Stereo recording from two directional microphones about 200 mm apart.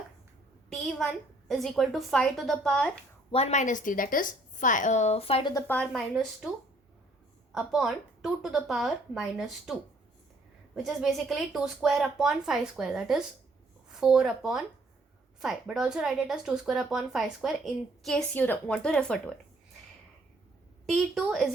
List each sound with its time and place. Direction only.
0.7 s speech: centre (ahead or behind)
3.3 s a woman's voice: 35° left (ahead or behind)
5.6 s speech: 5° left (ahead or behind)
7.5 s speech: centre (ahead or behind)
10.8 s speech: centre (ahead or behind)
20.8 s speech: centre (ahead or behind)